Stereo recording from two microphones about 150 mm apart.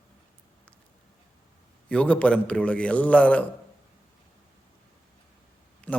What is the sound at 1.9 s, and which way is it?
A man's voice, 10° left (ahead or behind).